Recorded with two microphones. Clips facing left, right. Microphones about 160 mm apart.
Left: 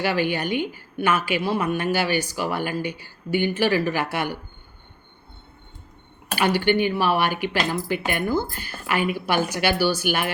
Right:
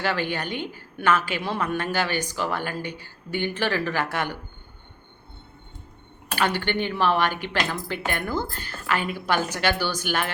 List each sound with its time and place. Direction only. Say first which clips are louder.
0.0 s a woman's voice: left 4 dB; 10° left (ahead or behind)
6.3 s a woman's voice: left 4 dB; 10° left (ahead or behind)